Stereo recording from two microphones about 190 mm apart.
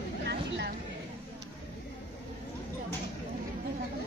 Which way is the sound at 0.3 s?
65° right (ahead or behind).